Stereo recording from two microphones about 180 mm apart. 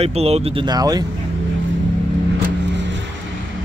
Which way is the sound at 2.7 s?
80° right.